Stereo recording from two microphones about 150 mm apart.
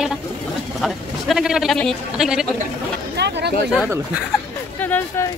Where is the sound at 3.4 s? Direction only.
90° right.